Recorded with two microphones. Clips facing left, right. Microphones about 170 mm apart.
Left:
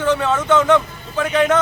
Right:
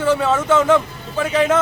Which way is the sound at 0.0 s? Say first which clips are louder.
Right 1 dB; 5° right (ahead or behind).